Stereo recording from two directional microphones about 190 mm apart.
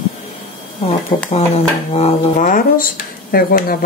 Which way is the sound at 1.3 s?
30° left (ahead or behind).